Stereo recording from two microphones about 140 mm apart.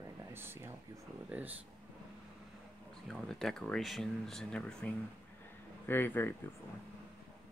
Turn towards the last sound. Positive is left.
turn(degrees=15)  # may be behind; listen again after turning